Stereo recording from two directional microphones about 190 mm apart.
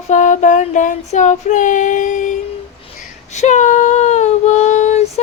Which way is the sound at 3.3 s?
40° left (ahead or behind).